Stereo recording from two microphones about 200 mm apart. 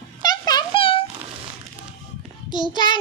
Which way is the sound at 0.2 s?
20° left (ahead or behind).